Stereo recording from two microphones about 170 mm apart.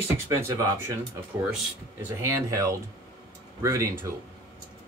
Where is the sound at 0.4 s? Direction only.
15° right (ahead or behind).